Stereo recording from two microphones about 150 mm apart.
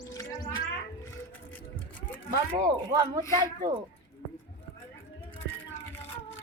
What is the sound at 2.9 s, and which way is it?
Speech, 25° right (ahead or behind).